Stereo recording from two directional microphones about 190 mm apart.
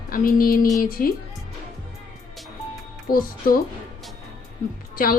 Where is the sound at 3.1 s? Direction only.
50° left (ahead or behind).